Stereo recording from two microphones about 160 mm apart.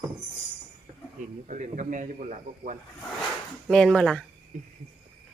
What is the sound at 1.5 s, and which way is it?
Speech, 55° right (ahead or behind).